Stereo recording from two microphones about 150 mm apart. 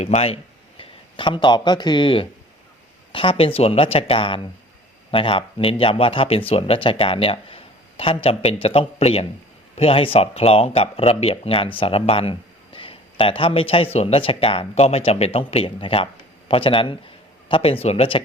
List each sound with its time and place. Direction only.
0.0 s a man's voice: 45° left (ahead or behind)